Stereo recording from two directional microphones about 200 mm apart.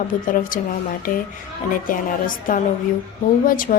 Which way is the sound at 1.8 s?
45° left (ahead or behind).